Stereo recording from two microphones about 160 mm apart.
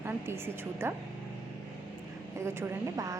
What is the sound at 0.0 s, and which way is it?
Speech, 15° right (ahead or behind).